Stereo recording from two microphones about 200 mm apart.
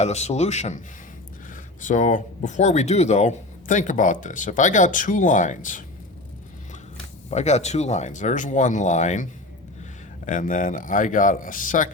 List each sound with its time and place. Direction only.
0.0 s speech: 35° left (ahead or behind)
7.3 s speech: 35° left (ahead or behind)
10.2 s speech: 40° left (ahead or behind)